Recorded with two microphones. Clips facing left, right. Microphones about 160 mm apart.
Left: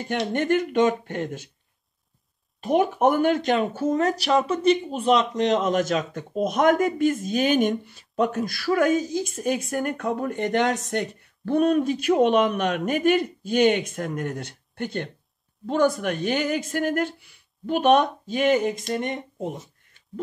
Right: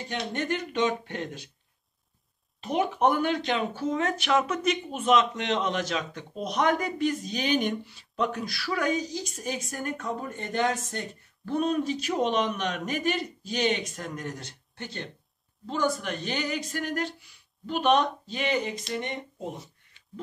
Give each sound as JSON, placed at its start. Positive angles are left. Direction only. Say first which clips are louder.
{"t": 0.3, "sound": "speech", "louder": "left 9 dB", "side_deg": 50}
{"t": 2.6, "sound": "speech", "louder": "left 5 dB", "side_deg": 45}